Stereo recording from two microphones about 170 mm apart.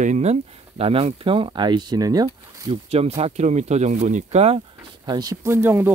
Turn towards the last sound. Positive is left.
turn(degrees=-15)  # may be behind; listen again after turning